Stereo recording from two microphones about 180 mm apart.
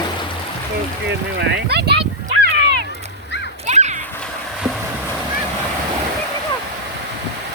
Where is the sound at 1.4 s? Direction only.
70° right (ahead or behind).